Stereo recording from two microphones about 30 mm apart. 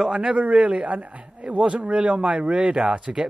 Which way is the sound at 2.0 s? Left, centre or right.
Right.